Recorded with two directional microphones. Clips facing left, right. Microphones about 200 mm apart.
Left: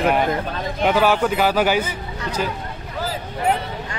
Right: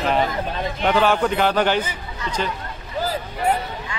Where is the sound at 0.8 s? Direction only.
10° left (ahead or behind).